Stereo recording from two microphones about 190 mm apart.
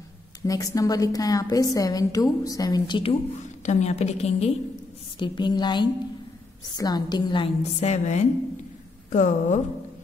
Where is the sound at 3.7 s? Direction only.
35° left (ahead or behind).